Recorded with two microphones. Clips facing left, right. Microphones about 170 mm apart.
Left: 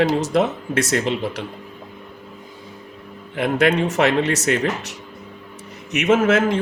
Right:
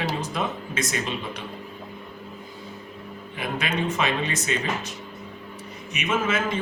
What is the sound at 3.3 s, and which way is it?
A man's voice, 80° left.